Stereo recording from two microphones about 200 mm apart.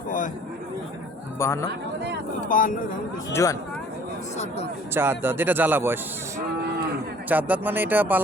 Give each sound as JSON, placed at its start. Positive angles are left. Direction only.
{"t": 1.4, "sound": "speech", "side_deg": 15}
{"t": 2.5, "sound": "speech", "side_deg": 40}
{"t": 3.3, "sound": "speech", "side_deg": 15}
{"t": 4.9, "sound": "speech", "side_deg": -10}
{"t": 7.3, "sound": "speech", "side_deg": -10}